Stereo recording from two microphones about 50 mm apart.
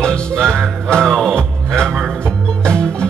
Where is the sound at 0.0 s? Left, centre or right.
Centre.